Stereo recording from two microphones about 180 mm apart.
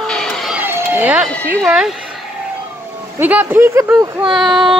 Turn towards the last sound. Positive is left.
turn(degrees=0)  # may be behind; listen again after turning